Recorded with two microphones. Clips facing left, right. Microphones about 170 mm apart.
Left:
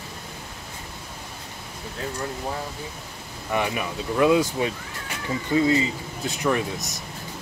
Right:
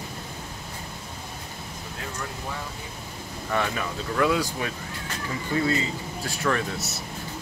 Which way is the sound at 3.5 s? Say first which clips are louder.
Left 2 dB; 15° left (ahead or behind).